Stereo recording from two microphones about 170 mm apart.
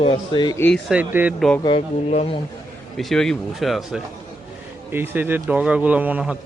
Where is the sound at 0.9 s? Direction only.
10° right (ahead or behind).